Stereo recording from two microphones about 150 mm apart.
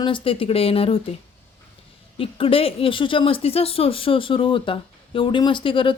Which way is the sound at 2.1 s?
40° left (ahead or behind).